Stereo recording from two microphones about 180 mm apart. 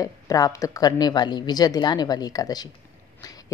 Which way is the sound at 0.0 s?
20° left (ahead or behind).